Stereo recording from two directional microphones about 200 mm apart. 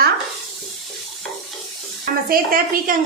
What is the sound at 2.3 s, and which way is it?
Speech, 45° right (ahead or behind).